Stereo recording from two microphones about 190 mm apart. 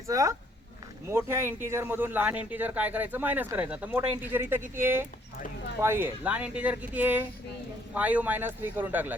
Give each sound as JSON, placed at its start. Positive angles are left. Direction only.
{"t": 0.1, "sound": "speech", "side_deg": -15}